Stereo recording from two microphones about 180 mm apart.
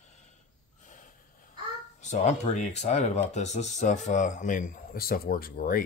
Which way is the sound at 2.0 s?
40° left (ahead or behind).